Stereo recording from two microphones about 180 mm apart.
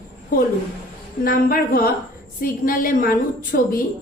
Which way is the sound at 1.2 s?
50° left (ahead or behind).